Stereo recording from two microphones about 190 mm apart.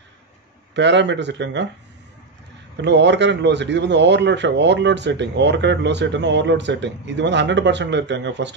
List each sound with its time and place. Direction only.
0.7 s a man's voice: 70° right (ahead or behind)
2.8 s a man's voice: 65° right (ahead or behind)